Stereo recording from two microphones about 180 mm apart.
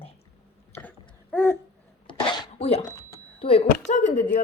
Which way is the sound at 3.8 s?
40° left (ahead or behind).